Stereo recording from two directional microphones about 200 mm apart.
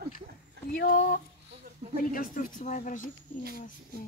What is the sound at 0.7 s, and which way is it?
Speech, 45° left (ahead or behind).